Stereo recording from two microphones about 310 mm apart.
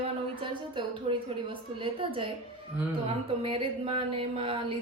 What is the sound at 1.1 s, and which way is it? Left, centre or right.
Speech, centre.